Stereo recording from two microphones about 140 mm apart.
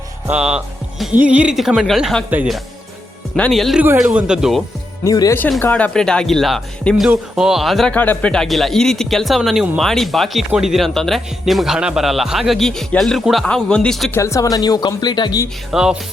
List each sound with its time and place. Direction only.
0.3 s speech: 10° right (ahead or behind)
3.3 s speech: 5° left (ahead or behind)
5.0 s speech: 25° left (ahead or behind)
5.5 s speech: 15° left (ahead or behind)
14.1 s speech: 20° left (ahead or behind)
15.7 s speech: 5° right (ahead or behind)